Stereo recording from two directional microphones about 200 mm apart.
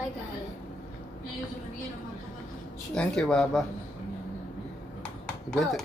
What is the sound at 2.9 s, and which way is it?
Speech, 5° left (ahead or behind).